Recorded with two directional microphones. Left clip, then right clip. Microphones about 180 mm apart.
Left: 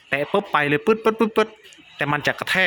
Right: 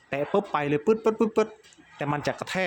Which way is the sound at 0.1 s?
5° right (ahead or behind).